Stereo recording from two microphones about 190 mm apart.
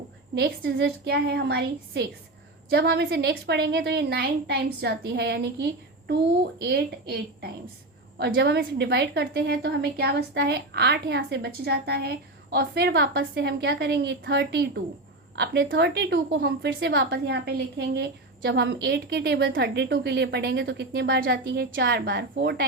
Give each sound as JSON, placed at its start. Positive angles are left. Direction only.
{"t": 0.3, "sound": "a woman's voice", "side_deg": -55}
{"t": 8.2, "sound": "a woman's voice", "side_deg": -60}